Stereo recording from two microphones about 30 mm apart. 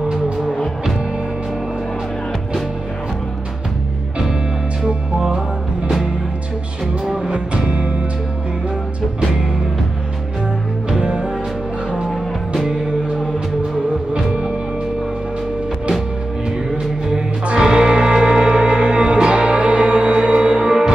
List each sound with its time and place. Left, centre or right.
11.0 s music: right
14.1 s music: right
16.7 s music: right
17.6 s music: right
18.8 s music: right